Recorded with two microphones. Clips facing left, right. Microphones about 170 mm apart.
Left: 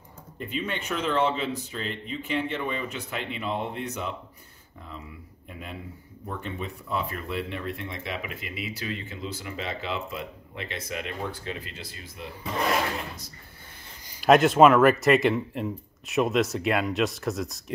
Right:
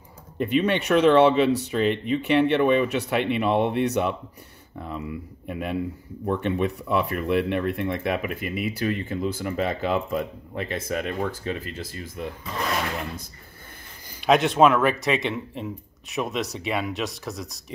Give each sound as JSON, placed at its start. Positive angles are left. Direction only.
{"t": 0.4, "sound": "speech", "side_deg": -70}
{"t": 14.2, "sound": "speech", "side_deg": 0}